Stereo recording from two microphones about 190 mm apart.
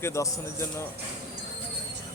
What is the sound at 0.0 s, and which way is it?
Speech, 15° left (ahead or behind).